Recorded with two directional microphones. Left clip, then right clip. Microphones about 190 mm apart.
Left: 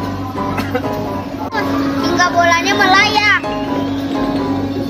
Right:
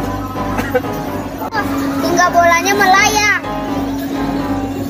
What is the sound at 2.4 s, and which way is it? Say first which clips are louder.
Music: right 1 dB; 50° right (ahead or behind).